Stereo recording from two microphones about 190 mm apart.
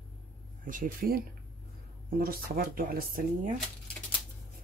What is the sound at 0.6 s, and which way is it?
Speech, 45° right (ahead or behind).